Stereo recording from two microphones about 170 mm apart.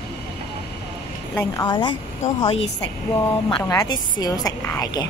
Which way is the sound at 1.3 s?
15° left (ahead or behind).